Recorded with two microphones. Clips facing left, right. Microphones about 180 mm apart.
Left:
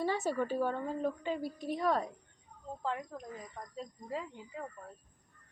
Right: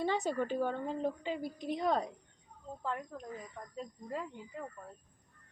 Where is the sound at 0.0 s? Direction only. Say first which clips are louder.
Even; 20° right (ahead or behind).